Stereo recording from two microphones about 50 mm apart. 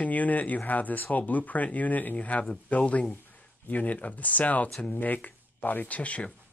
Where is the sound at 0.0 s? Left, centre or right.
Left.